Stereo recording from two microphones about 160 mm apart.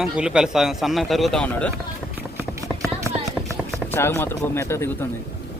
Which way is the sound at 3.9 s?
15° left (ahead or behind).